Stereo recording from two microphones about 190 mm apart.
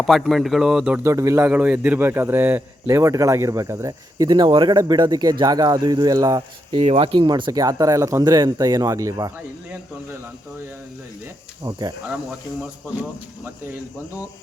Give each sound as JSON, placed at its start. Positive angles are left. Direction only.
{"t": 0.0, "sound": "a man's voice", "side_deg": 0}
{"t": 6.7, "sound": "speech", "side_deg": -30}
{"t": 11.6, "sound": "speech", "side_deg": -20}